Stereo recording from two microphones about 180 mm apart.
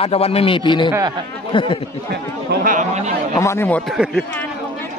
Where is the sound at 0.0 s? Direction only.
35° left (ahead or behind).